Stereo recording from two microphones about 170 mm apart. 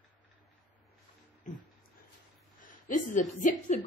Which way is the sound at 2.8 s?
50° left (ahead or behind).